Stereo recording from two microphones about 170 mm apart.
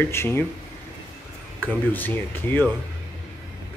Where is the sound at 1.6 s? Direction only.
10° left (ahead or behind).